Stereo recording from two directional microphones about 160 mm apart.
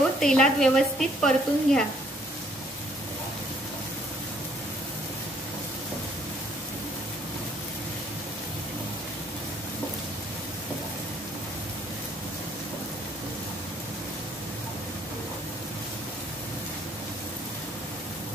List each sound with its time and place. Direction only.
0.2 s speech: 5° left (ahead or behind)